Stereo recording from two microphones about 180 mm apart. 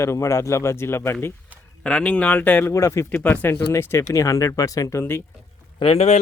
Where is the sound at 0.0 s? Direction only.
15° left (ahead or behind).